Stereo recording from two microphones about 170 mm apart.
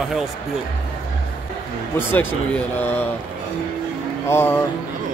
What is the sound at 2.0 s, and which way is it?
Speech, 10° left (ahead or behind).